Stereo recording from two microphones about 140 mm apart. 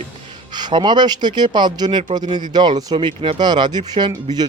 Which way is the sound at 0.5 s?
30° right (ahead or behind).